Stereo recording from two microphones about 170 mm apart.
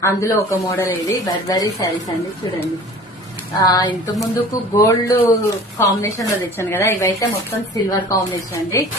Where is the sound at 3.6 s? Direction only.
25° left (ahead or behind).